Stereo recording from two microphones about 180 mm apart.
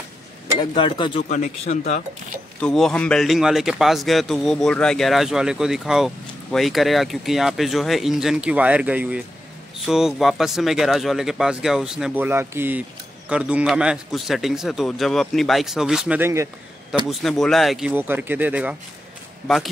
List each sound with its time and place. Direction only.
0.6 s speech: 25° left (ahead or behind)
1.3 s a man's voice: 40° left (ahead or behind)
2.6 s a man's voice: 5° left (ahead or behind); by 16.4 s 15° right (ahead or behind)
17.1 s a man's voice: centre (ahead or behind)